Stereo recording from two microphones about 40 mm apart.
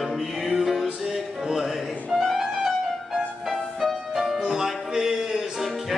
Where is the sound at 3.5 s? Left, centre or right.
Centre.